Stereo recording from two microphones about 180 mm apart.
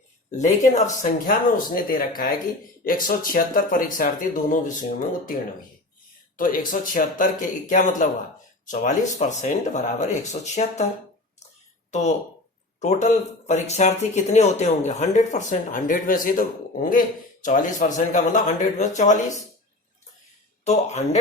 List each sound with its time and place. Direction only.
0.3 s speech: 40° left (ahead or behind)
6.3 s speech: 50° left (ahead or behind)
11.9 s speech: 40° left (ahead or behind)
20.7 s speech: 40° left (ahead or behind)